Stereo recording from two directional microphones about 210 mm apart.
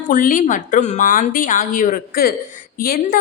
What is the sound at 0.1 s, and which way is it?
A woman's voice, 40° left (ahead or behind).